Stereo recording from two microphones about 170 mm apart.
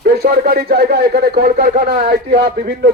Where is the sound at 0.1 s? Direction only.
65° right (ahead or behind).